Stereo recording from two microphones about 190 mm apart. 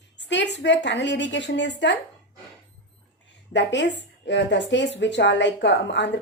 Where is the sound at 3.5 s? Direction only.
70° left (ahead or behind).